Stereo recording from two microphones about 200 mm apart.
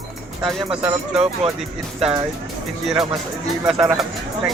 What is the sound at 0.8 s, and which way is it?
Speech, 30° right (ahead or behind).